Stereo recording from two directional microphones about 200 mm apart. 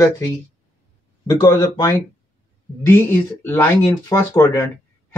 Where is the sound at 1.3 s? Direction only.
15° left (ahead or behind).